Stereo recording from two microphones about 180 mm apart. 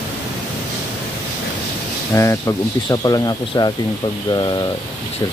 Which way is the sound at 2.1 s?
15° left (ahead or behind).